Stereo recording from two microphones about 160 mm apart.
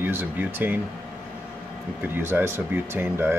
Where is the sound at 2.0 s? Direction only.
15° right (ahead or behind).